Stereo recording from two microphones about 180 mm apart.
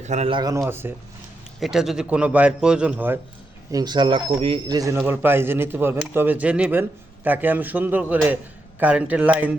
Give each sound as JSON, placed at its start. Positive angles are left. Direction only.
{"t": 0.0, "sound": "speech", "side_deg": -40}
{"t": 1.5, "sound": "a man's voice", "side_deg": 0}
{"t": 3.7, "sound": "a man's voice", "side_deg": -20}